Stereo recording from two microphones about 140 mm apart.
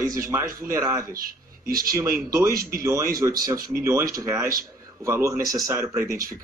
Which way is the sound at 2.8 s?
20° right (ahead or behind).